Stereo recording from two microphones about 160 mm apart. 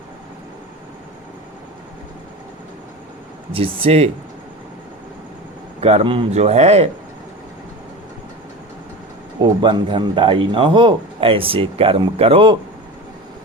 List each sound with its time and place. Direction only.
3.5 s speech: 35° right (ahead or behind)
5.8 s speech: 40° right (ahead or behind)
9.4 s speech: 30° right (ahead or behind)